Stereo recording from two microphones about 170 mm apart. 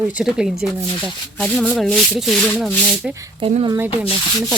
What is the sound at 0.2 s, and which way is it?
Speech, 5° right (ahead or behind).